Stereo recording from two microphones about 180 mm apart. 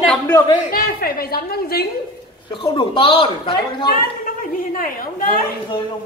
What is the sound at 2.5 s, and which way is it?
Speech, 25° left (ahead or behind).